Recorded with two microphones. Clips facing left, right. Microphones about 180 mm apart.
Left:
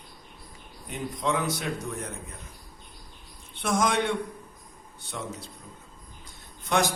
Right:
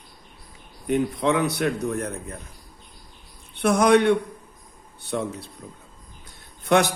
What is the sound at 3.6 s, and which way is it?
A man's voice, 65° right (ahead or behind).